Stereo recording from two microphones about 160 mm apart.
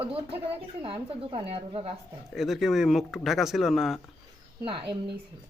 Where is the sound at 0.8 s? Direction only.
35° right (ahead or behind).